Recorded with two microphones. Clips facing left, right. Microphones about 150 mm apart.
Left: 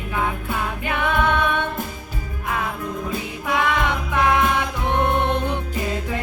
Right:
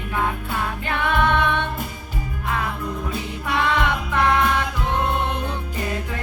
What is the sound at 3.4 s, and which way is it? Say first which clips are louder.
Music: even; 15° left (ahead or behind).